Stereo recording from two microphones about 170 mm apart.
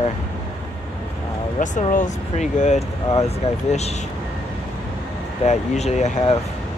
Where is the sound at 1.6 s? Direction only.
50° left (ahead or behind).